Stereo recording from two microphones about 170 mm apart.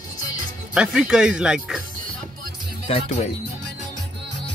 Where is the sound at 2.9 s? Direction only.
40° left (ahead or behind).